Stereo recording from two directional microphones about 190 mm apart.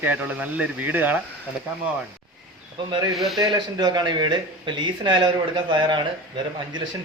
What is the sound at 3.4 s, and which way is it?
Speech, 20° right (ahead or behind).